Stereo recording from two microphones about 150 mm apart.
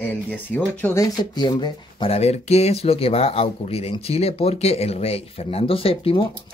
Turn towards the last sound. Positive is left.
turn(degrees=40)  # may be behind; listen again after turning